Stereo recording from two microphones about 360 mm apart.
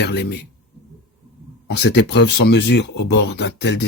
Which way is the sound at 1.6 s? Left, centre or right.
Left.